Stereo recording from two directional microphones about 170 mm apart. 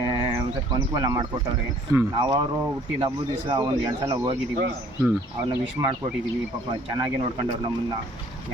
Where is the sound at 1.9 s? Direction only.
20° right (ahead or behind).